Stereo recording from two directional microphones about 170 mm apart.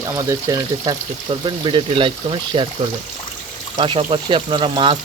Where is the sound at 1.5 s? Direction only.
30° right (ahead or behind).